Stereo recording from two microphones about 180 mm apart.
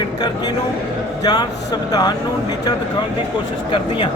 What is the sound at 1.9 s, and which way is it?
Speech, 20° left (ahead or behind).